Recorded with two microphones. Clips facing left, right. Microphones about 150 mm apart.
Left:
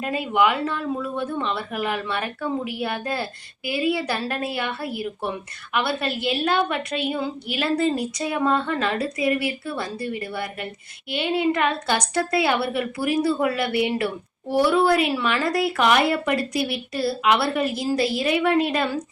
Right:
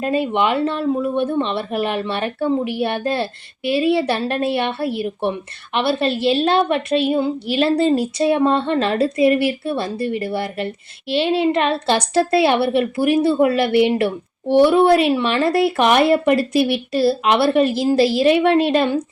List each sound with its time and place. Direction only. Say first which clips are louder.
0.0 s a woman's voice: right 3 dB; 30° right (ahead or behind)